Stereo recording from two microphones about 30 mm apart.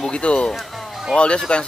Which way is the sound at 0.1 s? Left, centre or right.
Left.